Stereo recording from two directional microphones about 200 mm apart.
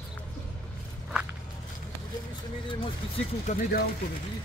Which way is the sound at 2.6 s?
30° left (ahead or behind).